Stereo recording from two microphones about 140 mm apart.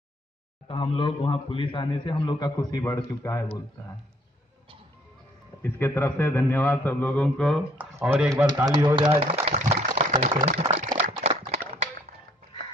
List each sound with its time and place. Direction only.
0.7 s a man's voice: 40° left (ahead or behind); by 3.4 s 20° left (ahead or behind)
5.6 s a man's voice: 15° left (ahead or behind)
7.7 s speech: 10° right (ahead or behind)
8.7 s speech: 35° right (ahead or behind)
9.1 s a sound: 50° right (ahead or behind)